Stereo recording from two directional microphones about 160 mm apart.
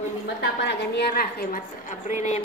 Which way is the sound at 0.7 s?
80° left.